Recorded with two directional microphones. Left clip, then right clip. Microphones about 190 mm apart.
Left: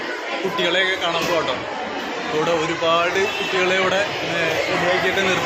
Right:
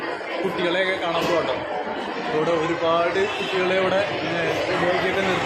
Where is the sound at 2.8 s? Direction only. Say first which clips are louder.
Left 3 dB; centre (ahead or behind).